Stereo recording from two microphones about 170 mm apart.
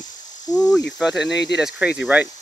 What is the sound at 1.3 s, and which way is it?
Speech, 90° left.